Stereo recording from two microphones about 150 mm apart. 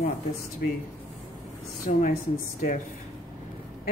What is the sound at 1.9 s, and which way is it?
Speech, 55° left (ahead or behind).